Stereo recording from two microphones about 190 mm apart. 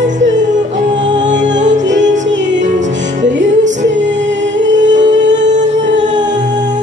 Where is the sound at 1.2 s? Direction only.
70° right (ahead or behind).